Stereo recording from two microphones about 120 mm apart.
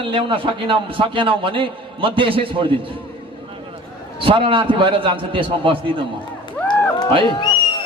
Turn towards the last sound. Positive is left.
turn(degrees=35)  # may be behind; listen again after turning